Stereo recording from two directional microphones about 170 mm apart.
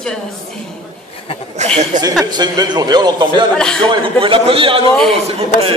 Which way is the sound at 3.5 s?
5° left (ahead or behind).